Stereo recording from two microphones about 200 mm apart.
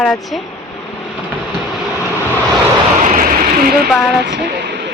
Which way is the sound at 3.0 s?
45° right (ahead or behind).